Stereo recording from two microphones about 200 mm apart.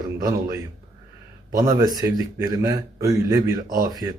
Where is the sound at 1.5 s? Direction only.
15° right (ahead or behind).